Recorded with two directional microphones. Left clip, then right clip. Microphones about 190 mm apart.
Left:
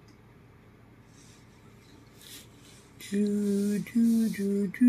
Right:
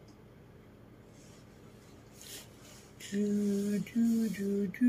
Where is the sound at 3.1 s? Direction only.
45° left (ahead or behind).